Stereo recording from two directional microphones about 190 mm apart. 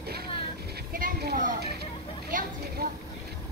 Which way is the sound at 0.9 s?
50° right (ahead or behind).